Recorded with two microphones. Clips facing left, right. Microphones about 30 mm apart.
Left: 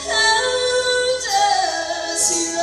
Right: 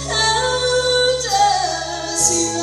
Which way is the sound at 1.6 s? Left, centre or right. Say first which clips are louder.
Left 1 dB; left.